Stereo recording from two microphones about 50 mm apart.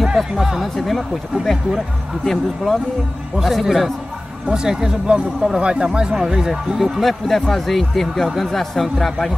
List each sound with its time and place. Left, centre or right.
0.0 s music: centre
0.7 s speech: centre
4.5 s speech: centre
7.0 s speech: centre